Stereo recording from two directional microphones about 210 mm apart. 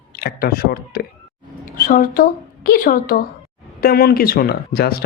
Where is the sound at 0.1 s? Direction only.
45° left (ahead or behind).